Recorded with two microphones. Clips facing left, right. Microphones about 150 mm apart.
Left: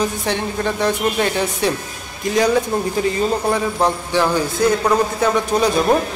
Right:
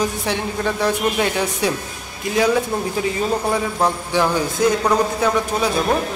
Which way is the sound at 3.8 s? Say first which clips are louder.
Even; 10° right (ahead or behind).